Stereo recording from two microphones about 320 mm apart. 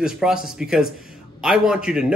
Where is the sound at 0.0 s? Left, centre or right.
Centre.